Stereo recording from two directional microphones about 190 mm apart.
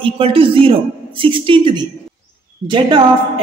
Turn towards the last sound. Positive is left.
turn(degrees=-25)  # may be behind; listen again after turning